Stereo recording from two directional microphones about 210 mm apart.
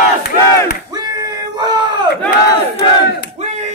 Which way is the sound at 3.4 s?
35° right (ahead or behind).